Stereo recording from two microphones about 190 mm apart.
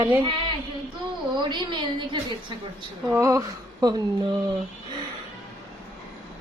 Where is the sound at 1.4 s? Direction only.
25° right (ahead or behind).